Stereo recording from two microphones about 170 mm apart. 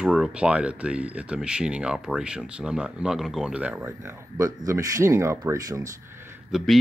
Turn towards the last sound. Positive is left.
turn(degrees=-5)  # may be behind; listen again after turning